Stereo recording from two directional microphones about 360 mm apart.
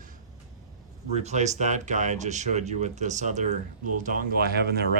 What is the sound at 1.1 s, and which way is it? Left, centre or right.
Speech, centre.